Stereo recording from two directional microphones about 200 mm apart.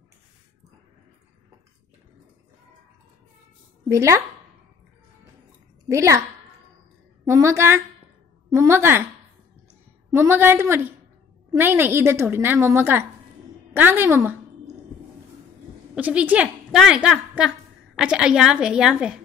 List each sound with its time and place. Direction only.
3.9 s a woman's voice: 15° right (ahead or behind)
5.9 s a woman's voice: 15° right (ahead or behind)
7.2 s a woman's voice: 15° right (ahead or behind)
10.1 s a woman's voice: 10° right (ahead or behind)
15.9 s a woman's voice: 5° right (ahead or behind)